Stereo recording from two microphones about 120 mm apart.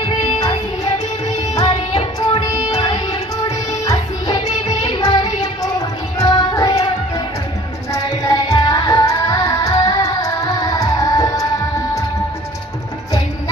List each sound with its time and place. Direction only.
1.9 s music: 45° left (ahead or behind); by 6.8 s 25° left (ahead or behind)
8.2 s music: 25° left (ahead or behind)